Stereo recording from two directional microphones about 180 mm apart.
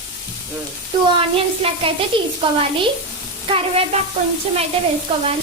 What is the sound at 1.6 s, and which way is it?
Speech, 30° right (ahead or behind).